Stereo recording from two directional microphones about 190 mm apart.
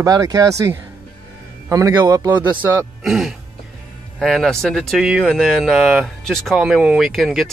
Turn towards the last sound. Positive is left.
turn(degrees=0)  # may be behind; listen again after turning